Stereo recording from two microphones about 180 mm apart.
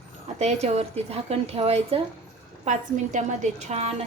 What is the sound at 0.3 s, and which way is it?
Speech, 35° right (ahead or behind).